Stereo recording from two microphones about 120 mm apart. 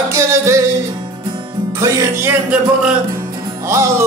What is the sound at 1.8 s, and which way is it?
Music, 20° right (ahead or behind).